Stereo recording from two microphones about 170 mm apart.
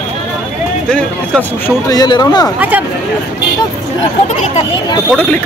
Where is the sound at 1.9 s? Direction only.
25° left (ahead or behind).